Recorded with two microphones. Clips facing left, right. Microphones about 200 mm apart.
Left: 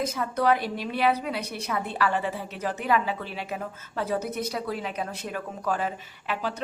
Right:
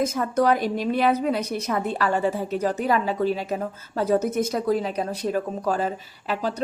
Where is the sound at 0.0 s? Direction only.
45° right (ahead or behind).